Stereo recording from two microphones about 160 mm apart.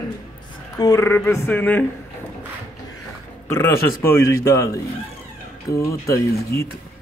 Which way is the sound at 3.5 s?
15° left (ahead or behind).